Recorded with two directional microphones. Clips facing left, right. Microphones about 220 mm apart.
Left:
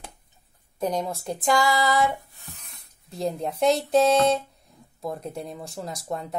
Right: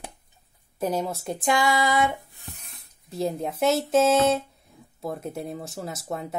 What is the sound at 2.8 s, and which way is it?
Speech, centre (ahead or behind).